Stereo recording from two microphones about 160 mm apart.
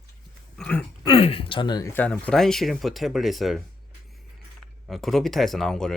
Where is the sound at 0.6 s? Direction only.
10° left (ahead or behind).